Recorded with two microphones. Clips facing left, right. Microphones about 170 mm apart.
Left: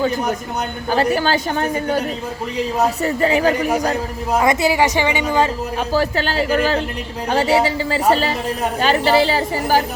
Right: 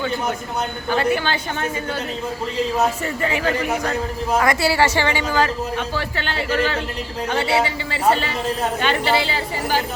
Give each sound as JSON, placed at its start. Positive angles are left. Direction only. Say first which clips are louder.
{"t": 0.9, "sound": "a woman's voice", "louder": "left 3 dB", "side_deg": 40}
{"t": 3.0, "sound": "a woman's voice", "louder": "left 6 dB", "side_deg": 35}
{"t": 4.4, "sound": "a woman's voice", "louder": "left 3 dB", "side_deg": 20}
{"t": 5.7, "sound": "a woman's voice", "louder": "left 6 dB", "side_deg": 40}